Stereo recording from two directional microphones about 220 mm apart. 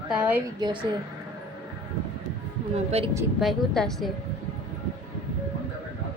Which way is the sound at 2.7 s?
30° right (ahead or behind).